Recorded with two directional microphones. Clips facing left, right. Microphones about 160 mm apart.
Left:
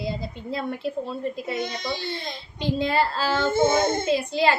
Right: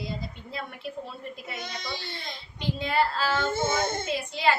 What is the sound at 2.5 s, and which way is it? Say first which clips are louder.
Speech: left 4 dB; 30° left (ahead or behind).